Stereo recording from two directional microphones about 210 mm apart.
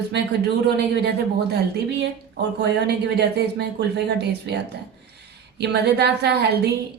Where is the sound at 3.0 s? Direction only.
50° right (ahead or behind).